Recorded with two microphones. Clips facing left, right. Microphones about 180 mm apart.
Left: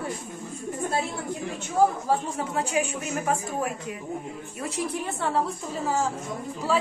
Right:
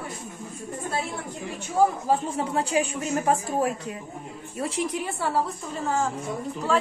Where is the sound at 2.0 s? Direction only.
25° right (ahead or behind).